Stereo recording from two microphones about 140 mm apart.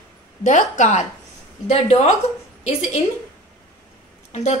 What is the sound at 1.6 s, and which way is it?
Speech, 50° left (ahead or behind).